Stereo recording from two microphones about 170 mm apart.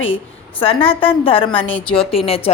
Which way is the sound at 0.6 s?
35° left (ahead or behind).